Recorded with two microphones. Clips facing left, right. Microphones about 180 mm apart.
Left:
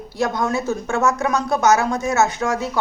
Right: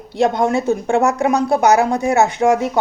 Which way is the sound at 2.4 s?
20° right (ahead or behind).